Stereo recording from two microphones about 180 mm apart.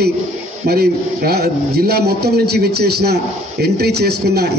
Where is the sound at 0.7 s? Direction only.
60° right (ahead or behind).